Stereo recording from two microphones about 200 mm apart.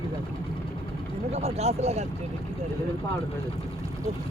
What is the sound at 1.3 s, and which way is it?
Speech, 30° right (ahead or behind).